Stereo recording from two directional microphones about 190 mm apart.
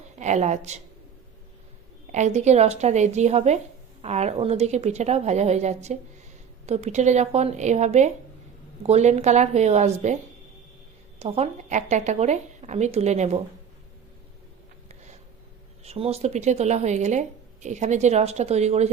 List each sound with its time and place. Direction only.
0.2 s speech: 35° right (ahead or behind)
2.1 s speech: 35° right (ahead or behind)
11.2 s speech: 35° right (ahead or behind)
15.8 s speech: 35° right (ahead or behind)